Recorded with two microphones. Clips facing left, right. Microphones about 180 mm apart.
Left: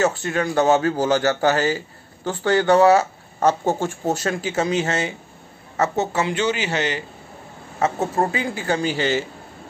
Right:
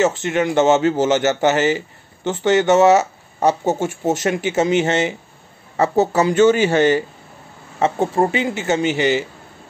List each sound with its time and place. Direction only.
0.0 s speech: 20° right (ahead or behind)
5.8 s speech: 35° right (ahead or behind)
7.8 s speech: 25° right (ahead or behind)